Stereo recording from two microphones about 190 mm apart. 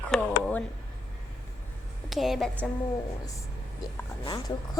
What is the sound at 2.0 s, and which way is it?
Speech, centre (ahead or behind).